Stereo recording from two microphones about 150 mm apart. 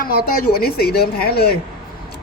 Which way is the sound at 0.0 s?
75° left (ahead or behind).